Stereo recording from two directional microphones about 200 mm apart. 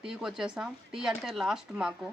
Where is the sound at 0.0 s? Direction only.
5° right (ahead or behind).